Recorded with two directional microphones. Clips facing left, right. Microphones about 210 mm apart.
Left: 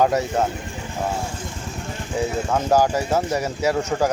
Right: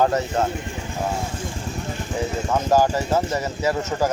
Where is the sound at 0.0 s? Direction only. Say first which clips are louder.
Left 1 dB; 15° left (ahead or behind).